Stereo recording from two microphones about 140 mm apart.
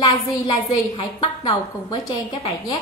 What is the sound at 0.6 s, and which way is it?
A woman's voice, 35° left (ahead or behind).